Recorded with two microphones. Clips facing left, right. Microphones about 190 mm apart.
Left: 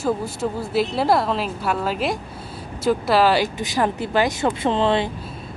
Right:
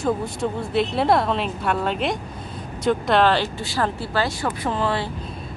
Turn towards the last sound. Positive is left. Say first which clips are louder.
# left 4 dB
turn(degrees=20)  # may be behind; listen again after turning